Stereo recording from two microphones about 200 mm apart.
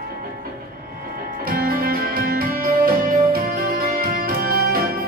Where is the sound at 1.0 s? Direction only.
45° right (ahead or behind).